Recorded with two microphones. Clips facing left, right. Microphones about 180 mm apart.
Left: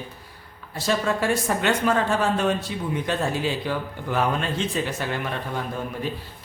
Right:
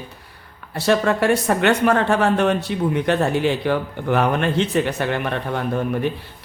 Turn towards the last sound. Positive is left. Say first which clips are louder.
# right 8 dB
turn(degrees=-65)  # may be behind; listen again after turning